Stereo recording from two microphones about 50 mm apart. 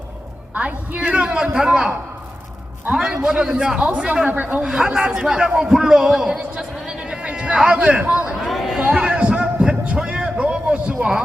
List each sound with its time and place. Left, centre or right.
0.9 s a man's voice: right
2.9 s a man's voice: centre
3.8 s a man's voice: right
8.4 s chatter: centre
8.8 s a sound: right
10.0 s a man's voice: centre